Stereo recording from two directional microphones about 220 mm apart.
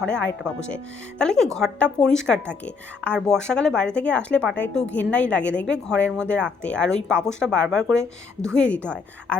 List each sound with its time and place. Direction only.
0.1 s speech: 5° left (ahead or behind)